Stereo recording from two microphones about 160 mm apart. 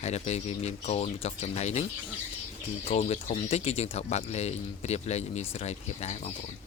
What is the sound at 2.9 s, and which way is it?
Speech, 40° left (ahead or behind).